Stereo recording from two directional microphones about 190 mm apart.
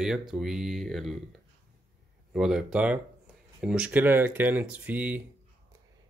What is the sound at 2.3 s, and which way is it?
Speech, 5° right (ahead or behind).